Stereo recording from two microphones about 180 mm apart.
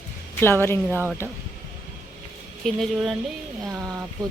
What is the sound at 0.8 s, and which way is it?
Speech, 15° right (ahead or behind).